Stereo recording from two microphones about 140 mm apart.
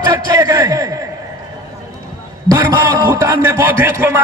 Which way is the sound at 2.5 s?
25° right (ahead or behind).